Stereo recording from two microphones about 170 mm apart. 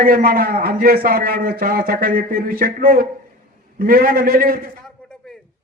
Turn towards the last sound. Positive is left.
turn(degrees=-60)  # may be behind; listen again after turning